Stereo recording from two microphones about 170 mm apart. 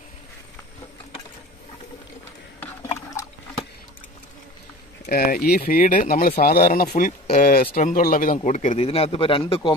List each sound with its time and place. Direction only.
5.0 s speech: 60° left (ahead or behind)
8.7 s a man's voice: 35° left (ahead or behind)